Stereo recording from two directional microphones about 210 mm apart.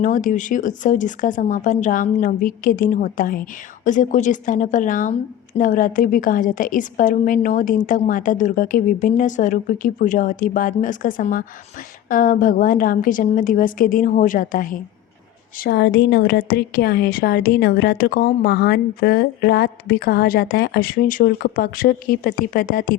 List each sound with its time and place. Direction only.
0.0 s a woman's voice: 40° left (ahead or behind)